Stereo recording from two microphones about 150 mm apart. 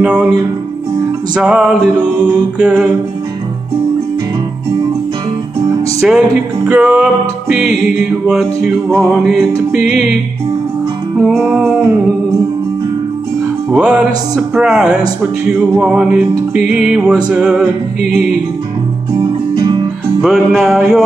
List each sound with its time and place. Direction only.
0.0 s music: 10° right (ahead or behind)
1.3 s music: 5° right (ahead or behind)
5.9 s music: 5° right (ahead or behind)
11.2 s music: 5° right (ahead or behind)
13.7 s music: 10° right (ahead or behind)
19.5 s music: 30° right (ahead or behind)
20.2 s music: centre (ahead or behind)